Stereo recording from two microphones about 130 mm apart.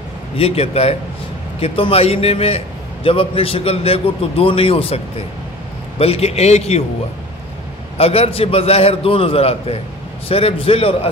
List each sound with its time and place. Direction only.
0.4 s a man's voice: 50° left (ahead or behind)
8.0 s a man's voice: 50° left (ahead or behind)